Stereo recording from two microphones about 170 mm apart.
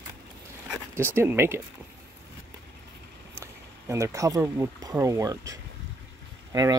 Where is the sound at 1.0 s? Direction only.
15° right (ahead or behind).